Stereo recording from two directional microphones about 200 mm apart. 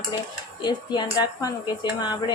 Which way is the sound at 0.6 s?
20° left (ahead or behind).